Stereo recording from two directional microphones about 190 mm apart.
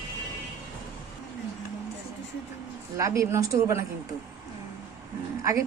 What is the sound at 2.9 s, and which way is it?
Speech, 15° right (ahead or behind).